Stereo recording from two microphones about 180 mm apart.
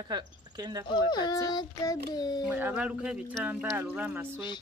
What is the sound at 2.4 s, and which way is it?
Speech, 10° right (ahead or behind).